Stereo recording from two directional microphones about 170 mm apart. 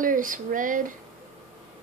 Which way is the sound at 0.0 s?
50° right (ahead or behind).